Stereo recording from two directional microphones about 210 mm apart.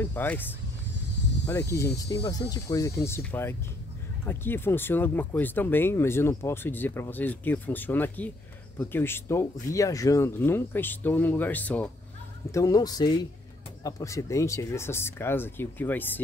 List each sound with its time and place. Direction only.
0.0 s speech: 10° left (ahead or behind)